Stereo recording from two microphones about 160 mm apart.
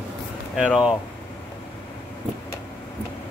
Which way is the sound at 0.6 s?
Centre (ahead or behind).